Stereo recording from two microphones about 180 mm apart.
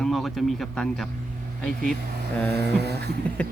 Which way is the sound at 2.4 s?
65° right (ahead or behind).